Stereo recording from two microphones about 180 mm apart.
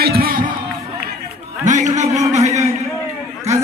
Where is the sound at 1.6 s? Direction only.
40° right (ahead or behind).